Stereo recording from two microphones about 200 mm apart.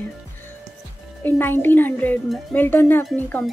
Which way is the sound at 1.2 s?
10° left (ahead or behind).